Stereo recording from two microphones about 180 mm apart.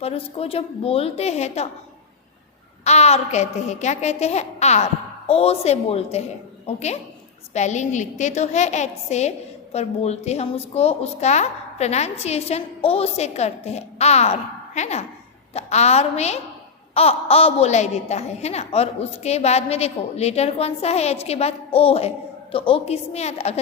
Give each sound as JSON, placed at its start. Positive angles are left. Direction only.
{"t": 0.0, "sound": "a woman's voice", "side_deg": 30}
{"t": 2.8, "sound": "a woman's voice", "side_deg": 35}